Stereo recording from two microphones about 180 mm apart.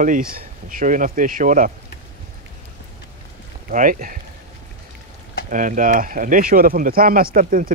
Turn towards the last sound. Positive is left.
turn(degrees=-50)  # may be behind; listen again after turning